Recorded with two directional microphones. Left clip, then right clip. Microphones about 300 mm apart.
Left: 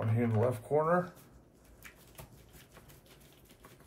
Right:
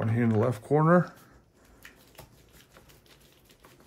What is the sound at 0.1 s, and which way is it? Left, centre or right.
Speech, right.